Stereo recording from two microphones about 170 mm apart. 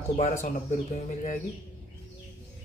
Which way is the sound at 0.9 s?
45° left (ahead or behind).